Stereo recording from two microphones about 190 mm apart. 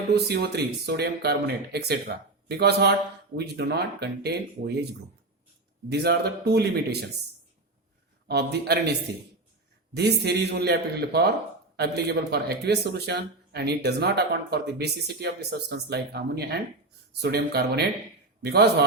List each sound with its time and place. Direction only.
0.1 s a man's voice: 60° right (ahead or behind)
5.9 s a man's voice: 60° right (ahead or behind)
8.3 s a man's voice: 60° right (ahead or behind)